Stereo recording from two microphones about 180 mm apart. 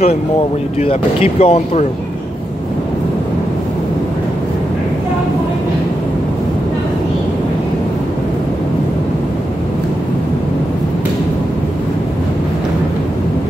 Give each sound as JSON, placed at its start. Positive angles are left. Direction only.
{"t": 0.7, "sound": "speech", "side_deg": 30}